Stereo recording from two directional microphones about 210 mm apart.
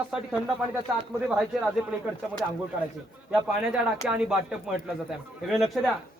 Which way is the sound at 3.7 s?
5° right (ahead or behind).